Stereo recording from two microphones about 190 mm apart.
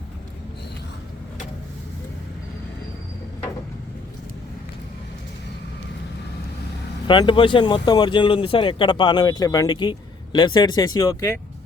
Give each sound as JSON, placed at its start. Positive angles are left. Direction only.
{"t": 7.1, "sound": "speech", "side_deg": 25}